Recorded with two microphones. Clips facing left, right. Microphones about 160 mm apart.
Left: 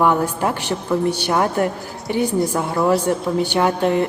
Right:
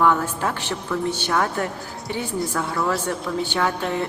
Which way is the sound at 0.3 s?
15° left (ahead or behind).